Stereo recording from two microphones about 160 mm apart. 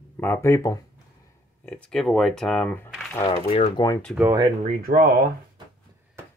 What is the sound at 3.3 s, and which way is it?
Speech, 35° left (ahead or behind).